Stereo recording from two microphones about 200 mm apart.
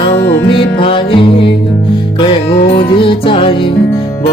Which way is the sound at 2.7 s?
25° left (ahead or behind).